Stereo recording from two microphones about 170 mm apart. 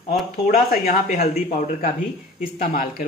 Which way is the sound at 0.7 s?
50° left (ahead or behind).